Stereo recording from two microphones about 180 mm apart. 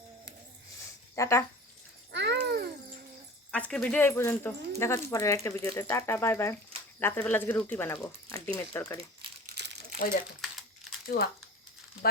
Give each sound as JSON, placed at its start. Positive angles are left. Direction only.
{"t": 1.1, "sound": "speech", "side_deg": 15}
{"t": 2.1, "sound": "a sound", "side_deg": -75}
{"t": 3.5, "sound": "speech", "side_deg": 5}
{"t": 9.6, "sound": "crumpling", "side_deg": -70}
{"t": 11.1, "sound": "speech", "side_deg": 55}